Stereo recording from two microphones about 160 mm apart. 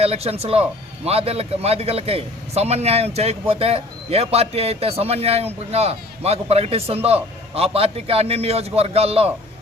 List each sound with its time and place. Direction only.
0.0 s speech: 40° right (ahead or behind)